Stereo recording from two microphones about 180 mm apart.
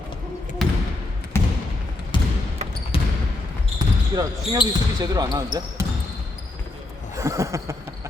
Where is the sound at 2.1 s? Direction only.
25° left (ahead or behind).